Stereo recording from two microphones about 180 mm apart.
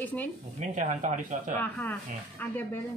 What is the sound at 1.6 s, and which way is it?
Speech, 10° left (ahead or behind).